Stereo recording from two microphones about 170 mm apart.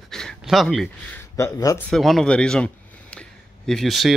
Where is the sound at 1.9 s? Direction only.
Centre (ahead or behind).